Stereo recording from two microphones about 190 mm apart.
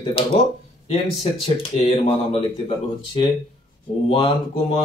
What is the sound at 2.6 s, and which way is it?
Speech, 25° left (ahead or behind).